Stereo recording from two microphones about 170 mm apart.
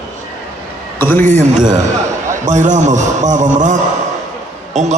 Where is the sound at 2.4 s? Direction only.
45° right (ahead or behind).